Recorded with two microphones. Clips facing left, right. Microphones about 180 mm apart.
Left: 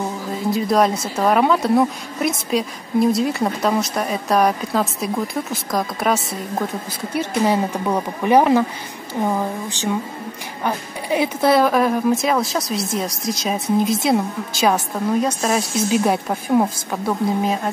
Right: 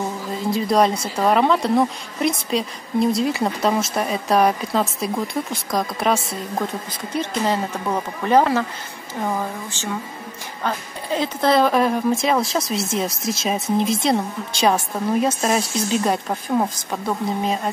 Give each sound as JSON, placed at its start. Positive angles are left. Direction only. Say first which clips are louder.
{"t": 0.5, "sound": "a woman's voice", "louder": "left 1 dB", "side_deg": 0}
{"t": 15.9, "sound": "a woman's voice", "louder": "left 2 dB", "side_deg": 10}